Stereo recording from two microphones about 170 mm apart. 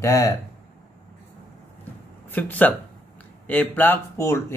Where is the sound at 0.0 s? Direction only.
20° left (ahead or behind).